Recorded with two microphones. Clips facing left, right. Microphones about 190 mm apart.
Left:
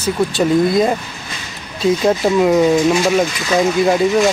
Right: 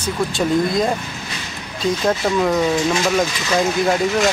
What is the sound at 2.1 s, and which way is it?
Speech, 10° left (ahead or behind).